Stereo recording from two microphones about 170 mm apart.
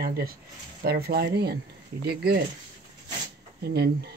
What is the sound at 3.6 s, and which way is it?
Speech, 70° right (ahead or behind).